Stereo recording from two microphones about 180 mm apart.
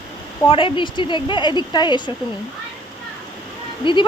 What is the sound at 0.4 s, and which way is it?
A woman's voice, 30° left (ahead or behind).